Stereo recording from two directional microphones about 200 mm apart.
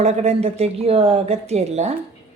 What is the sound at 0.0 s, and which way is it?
Speech, 35° right (ahead or behind).